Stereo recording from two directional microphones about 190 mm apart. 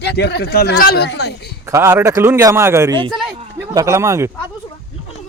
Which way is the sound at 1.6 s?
15° right (ahead or behind).